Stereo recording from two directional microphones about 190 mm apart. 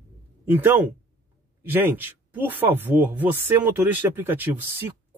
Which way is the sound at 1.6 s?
10° right (ahead or behind).